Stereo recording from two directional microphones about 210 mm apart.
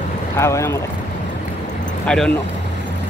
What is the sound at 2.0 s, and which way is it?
Speech, 5° left (ahead or behind).